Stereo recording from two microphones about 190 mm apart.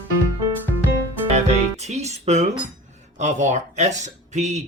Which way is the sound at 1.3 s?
35° right (ahead or behind).